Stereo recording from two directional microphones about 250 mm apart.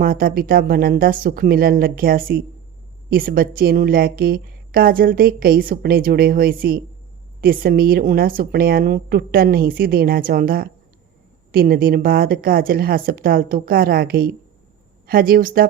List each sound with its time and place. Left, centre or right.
0.0 s a woman's voice: right